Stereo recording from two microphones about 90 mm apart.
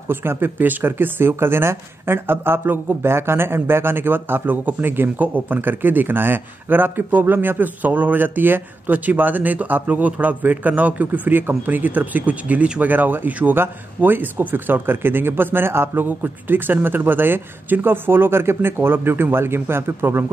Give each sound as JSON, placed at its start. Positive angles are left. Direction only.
{"t": 0.1, "sound": "speech", "side_deg": -25}